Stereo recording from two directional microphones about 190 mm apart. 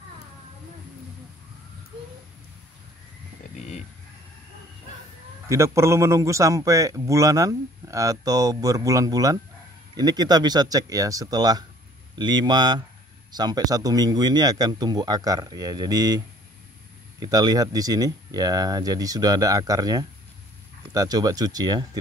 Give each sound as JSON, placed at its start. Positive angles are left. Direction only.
{"t": 3.5, "sound": "a sound", "side_deg": 35}
{"t": 5.5, "sound": "a man's voice", "side_deg": -15}
{"t": 17.2, "sound": "speech", "side_deg": -20}